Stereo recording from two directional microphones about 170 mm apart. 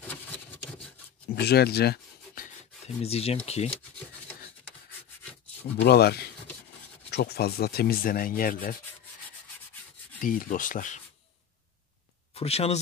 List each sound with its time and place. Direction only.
1.3 s rub: 70° left (ahead or behind)
3.0 s speech: 35° left (ahead or behind)
5.8 s speech: 70° left (ahead or behind); by 8.7 s 55° left (ahead or behind)
10.2 s rub: 55° left (ahead or behind)
12.4 s speech: 35° left (ahead or behind)